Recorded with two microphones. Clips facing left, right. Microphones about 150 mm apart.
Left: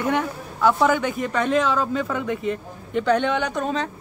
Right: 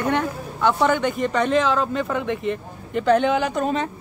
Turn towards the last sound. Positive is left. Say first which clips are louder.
# right 2 dB
turn(degrees=-5)  # may be behind; listen again after turning